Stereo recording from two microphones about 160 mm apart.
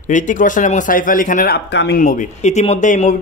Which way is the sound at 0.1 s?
50° left (ahead or behind).